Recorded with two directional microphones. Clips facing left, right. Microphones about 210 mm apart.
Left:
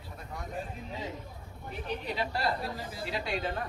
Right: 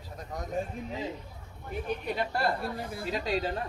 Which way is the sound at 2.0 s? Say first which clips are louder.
Right 1 dB; 50° right (ahead or behind).